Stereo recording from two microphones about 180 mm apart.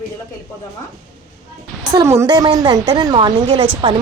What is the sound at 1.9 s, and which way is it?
A woman's voice, 15° right (ahead or behind).